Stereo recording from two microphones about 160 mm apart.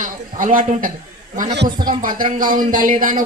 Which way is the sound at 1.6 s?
25° right (ahead or behind).